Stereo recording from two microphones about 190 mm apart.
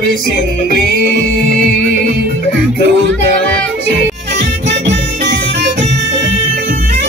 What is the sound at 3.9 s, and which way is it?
Music, 65° right (ahead or behind).